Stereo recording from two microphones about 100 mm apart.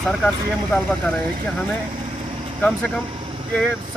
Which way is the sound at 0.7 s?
10° left (ahead or behind).